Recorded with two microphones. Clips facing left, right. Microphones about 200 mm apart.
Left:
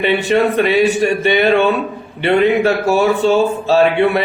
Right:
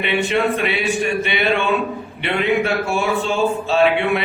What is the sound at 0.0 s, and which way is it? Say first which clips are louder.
Speech: left 5 dB; 40° left (ahead or behind).